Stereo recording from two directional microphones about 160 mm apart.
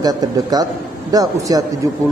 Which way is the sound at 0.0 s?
25° right (ahead or behind).